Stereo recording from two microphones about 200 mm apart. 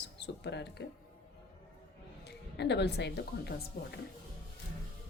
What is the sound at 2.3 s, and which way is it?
A woman's voice, 60° left (ahead or behind).